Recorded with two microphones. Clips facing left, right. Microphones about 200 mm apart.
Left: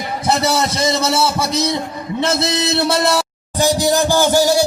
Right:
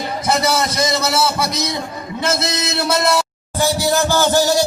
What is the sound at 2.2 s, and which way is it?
Speech, 30° left (ahead or behind).